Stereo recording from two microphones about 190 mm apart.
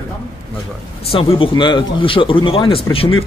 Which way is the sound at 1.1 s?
30° left (ahead or behind).